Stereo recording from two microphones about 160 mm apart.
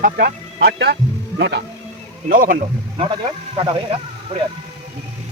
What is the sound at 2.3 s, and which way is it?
Speech, 60° right (ahead or behind).